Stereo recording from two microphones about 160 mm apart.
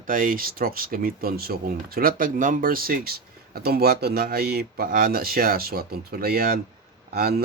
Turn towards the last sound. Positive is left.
turn(degrees=-75)  # may be behind; listen again after turning